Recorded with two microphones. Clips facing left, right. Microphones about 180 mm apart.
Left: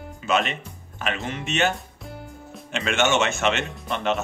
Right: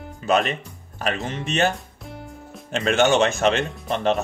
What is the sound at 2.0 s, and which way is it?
Music, centre (ahead or behind).